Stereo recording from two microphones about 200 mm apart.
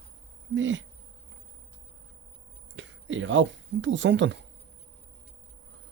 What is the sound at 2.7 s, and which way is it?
Speech, 70° right (ahead or behind).